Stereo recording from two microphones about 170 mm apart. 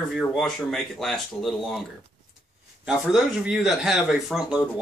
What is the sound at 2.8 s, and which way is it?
Speech, centre (ahead or behind).